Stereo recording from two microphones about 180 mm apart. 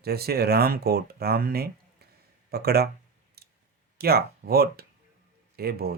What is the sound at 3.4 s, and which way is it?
Clicking, 60° right (ahead or behind).